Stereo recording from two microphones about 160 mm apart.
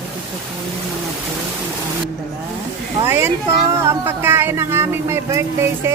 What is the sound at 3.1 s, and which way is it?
Speech, 15° right (ahead or behind).